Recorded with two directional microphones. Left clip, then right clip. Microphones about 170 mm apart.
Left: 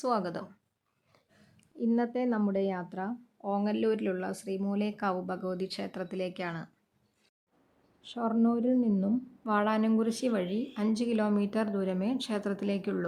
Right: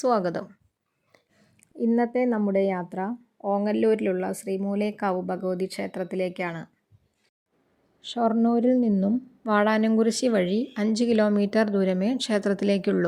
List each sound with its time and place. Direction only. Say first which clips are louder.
0.0 s speech: right 7 dB; 30° right (ahead or behind)
2.0 s speech: right 7 dB; 25° right (ahead or behind)
8.0 s speech: right 7 dB; 25° right (ahead or behind)